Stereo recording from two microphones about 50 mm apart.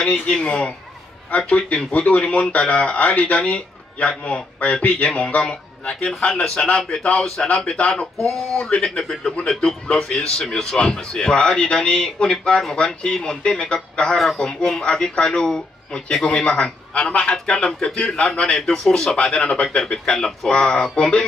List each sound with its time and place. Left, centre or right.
0.0 s a man's voice: centre
14.1 s a man's voice: centre
20.5 s a man's voice: left